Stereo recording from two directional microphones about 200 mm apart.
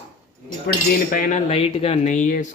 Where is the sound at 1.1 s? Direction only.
45° left (ahead or behind).